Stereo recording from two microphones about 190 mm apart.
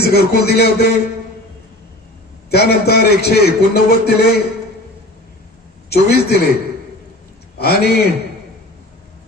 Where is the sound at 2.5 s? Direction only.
60° left (ahead or behind).